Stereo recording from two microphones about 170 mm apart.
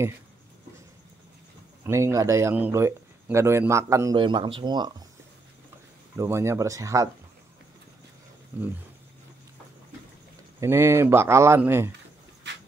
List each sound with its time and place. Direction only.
1.9 s speech: 15° right (ahead or behind)
4.2 s speech: 30° right (ahead or behind)
6.1 s speech: 15° right (ahead or behind)
8.5 s speech: 10° right (ahead or behind)
10.6 s speech: 15° right (ahead or behind)